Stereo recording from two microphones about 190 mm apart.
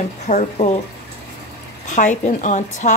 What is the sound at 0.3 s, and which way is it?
Speech, 40° left (ahead or behind).